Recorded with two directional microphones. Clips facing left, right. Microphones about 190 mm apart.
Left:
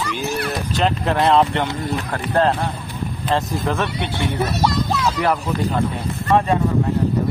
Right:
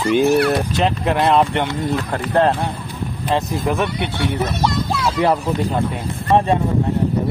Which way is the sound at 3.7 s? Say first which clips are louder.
Right 2 dB; 15° right (ahead or behind).